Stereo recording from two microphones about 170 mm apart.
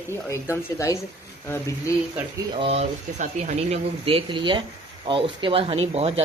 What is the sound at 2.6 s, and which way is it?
Speech, 40° right (ahead or behind).